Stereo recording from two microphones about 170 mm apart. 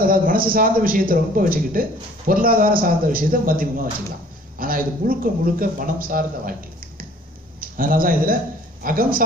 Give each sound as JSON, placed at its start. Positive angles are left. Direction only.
{"t": 0.0, "sound": "a man's voice", "side_deg": -55}
{"t": 7.6, "sound": "a man's voice", "side_deg": -55}